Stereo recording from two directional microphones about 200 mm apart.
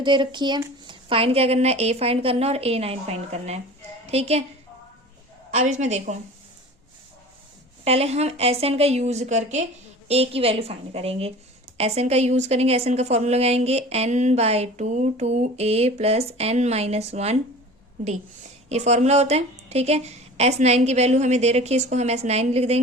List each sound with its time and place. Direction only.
0.0 s a woman's voice: 25° right (ahead or behind)
5.5 s a woman's voice: 35° right (ahead or behind)
7.9 s a woman's voice: 30° right (ahead or behind)
18.7 s a woman's voice: 35° right (ahead or behind)